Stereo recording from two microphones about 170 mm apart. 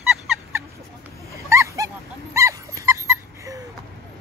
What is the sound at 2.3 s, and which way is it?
Dog, 20° right (ahead or behind).